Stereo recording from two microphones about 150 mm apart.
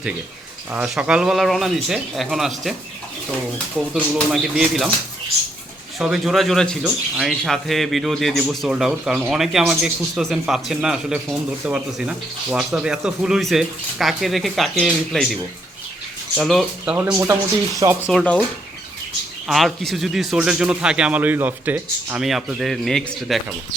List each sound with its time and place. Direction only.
0.7 s speech: 5° right (ahead or behind)
3.8 s speech: centre (ahead or behind)
6.0 s speech: 5° right (ahead or behind)
16.4 s speech: centre (ahead or behind)
17.7 s speech: 20° right (ahead or behind)
18.1 s speech: centre (ahead or behind)
19.5 s speech: centre (ahead or behind)